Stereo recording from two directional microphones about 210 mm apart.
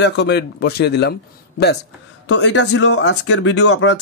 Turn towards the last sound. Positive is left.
turn(degrees=60)  # may be behind; listen again after turning